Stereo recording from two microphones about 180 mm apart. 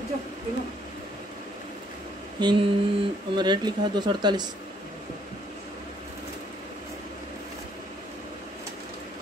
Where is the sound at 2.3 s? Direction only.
25° right (ahead or behind).